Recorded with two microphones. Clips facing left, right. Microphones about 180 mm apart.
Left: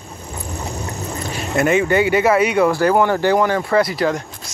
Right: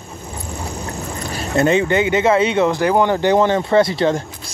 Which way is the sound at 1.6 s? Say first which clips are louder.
Even; 25° right (ahead or behind).